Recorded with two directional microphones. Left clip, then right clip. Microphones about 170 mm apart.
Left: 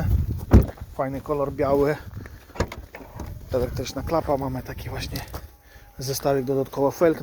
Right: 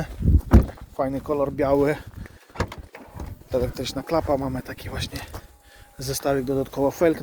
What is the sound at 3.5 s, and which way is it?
Speech, 15° right (ahead or behind).